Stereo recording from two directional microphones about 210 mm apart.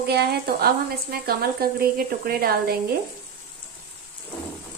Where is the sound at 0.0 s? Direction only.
50° right (ahead or behind).